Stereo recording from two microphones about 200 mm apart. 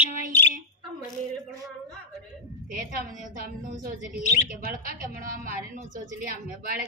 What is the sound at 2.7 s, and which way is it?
A woman's voice, 45° right (ahead or behind).